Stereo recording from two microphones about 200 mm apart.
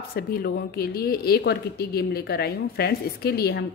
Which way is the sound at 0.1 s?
50° left (ahead or behind).